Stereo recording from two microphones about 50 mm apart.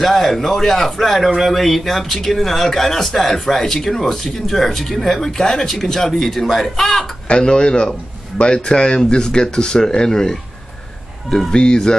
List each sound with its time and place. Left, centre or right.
0.0 s a man's voice: centre
7.2 s speech: centre